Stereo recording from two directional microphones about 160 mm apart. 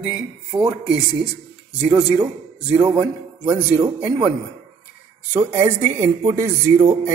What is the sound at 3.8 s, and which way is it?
Speech, 25° right (ahead or behind).